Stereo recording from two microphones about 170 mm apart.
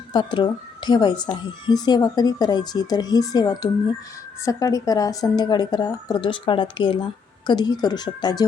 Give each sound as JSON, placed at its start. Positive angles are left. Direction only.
{"t": 0.1, "sound": "speech", "side_deg": 25}